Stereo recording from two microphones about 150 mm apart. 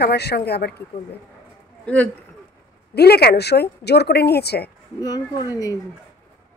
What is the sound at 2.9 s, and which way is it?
A woman's voice, 90° left.